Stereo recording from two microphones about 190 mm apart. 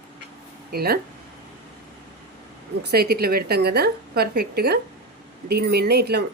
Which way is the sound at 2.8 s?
55° right (ahead or behind).